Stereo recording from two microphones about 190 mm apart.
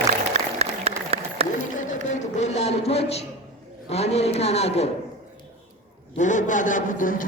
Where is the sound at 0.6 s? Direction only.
30° right (ahead or behind).